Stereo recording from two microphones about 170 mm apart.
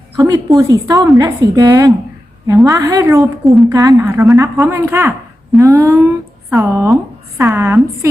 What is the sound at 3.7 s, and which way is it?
Speech, 20° right (ahead or behind).